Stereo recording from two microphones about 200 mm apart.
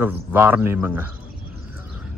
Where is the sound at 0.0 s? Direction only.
10° right (ahead or behind).